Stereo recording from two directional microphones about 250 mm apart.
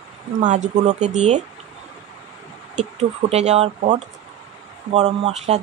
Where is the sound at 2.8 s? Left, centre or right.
Right.